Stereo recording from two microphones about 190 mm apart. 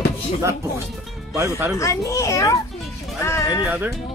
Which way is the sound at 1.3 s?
15° right (ahead or behind).